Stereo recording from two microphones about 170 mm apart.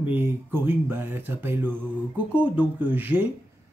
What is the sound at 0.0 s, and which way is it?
Speech, 10° right (ahead or behind).